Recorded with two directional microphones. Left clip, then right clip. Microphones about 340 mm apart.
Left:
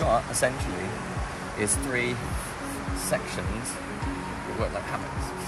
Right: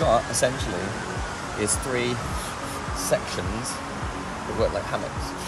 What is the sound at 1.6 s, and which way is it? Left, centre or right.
Speech, centre.